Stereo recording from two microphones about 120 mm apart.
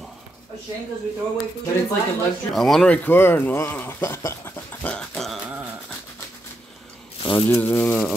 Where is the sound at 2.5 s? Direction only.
5° left (ahead or behind); by 4.4 s 25° left (ahead or behind).